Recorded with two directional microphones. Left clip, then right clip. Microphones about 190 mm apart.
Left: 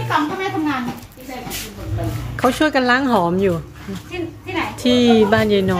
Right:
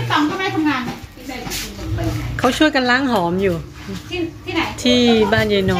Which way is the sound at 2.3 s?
10° left (ahead or behind).